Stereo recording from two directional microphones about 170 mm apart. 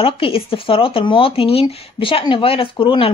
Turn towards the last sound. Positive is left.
turn(degrees=30)  # may be behind; listen again after turning